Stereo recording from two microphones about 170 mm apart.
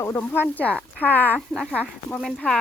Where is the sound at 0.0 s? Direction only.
10° left (ahead or behind).